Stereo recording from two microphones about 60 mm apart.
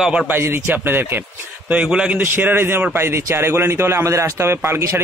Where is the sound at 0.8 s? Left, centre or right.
Right.